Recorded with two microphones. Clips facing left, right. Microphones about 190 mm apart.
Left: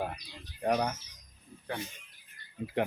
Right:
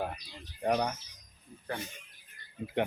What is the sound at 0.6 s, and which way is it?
Speech, centre (ahead or behind).